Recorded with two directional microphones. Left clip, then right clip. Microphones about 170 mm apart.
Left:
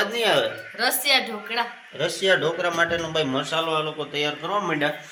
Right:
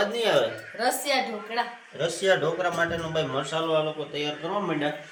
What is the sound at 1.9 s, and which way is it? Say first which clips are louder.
A man's voice: left 2 dB; 40° left (ahead or behind).